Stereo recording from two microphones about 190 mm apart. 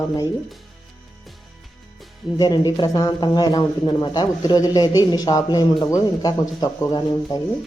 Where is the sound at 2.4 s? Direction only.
20° left (ahead or behind).